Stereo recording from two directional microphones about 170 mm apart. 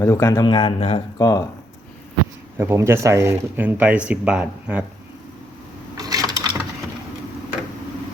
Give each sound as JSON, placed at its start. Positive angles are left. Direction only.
{"t": 0.0, "sound": "speech", "side_deg": 15}
{"t": 0.4, "sound": "speech", "side_deg": 30}
{"t": 1.2, "sound": "speech", "side_deg": 20}
{"t": 2.6, "sound": "speech", "side_deg": -15}
{"t": 6.0, "sound": "sewing machine", "side_deg": -20}